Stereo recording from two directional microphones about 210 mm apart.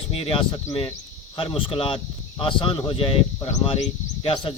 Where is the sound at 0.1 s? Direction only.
25° left (ahead or behind).